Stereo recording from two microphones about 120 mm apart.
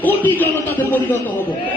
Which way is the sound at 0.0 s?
15° left (ahead or behind).